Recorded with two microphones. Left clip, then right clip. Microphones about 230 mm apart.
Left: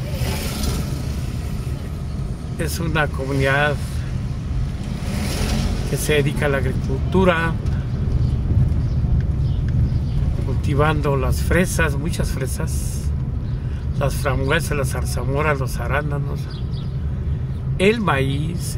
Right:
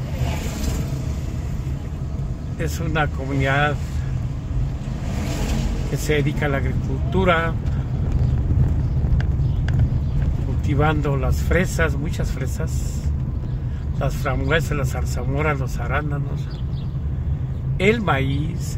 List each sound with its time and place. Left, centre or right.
2.6 s speech: centre
6.0 s speech: centre
10.7 s speech: centre
13.9 s speech: centre
17.7 s speech: centre